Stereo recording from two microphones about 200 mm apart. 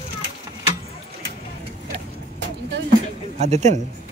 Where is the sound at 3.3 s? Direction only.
35° right (ahead or behind).